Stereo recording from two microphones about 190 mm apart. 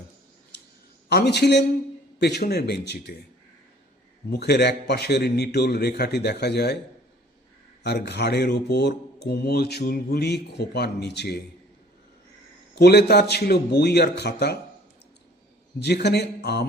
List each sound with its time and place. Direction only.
1.1 s speech: 60° left (ahead or behind)
4.3 s speech: 60° left (ahead or behind)
7.9 s speech: 60° left (ahead or behind)
12.7 s speech: 60° left (ahead or behind)
15.8 s speech: 60° left (ahead or behind)